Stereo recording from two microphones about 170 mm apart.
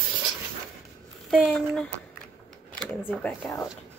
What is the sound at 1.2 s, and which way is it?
A woman's voice, 5° left (ahead or behind).